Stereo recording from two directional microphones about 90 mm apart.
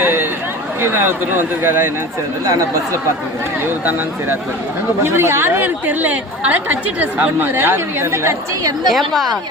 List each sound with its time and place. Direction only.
0.0 s a sound: 25° right (ahead or behind)
0.8 s speech: 25° right (ahead or behind)
2.4 s speech: 40° right (ahead or behind)
3.7 s speech: 25° right (ahead or behind)
8.9 s a woman's voice: centre (ahead or behind)